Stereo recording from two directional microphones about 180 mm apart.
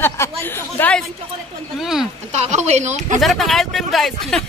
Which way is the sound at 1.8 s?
Centre (ahead or behind).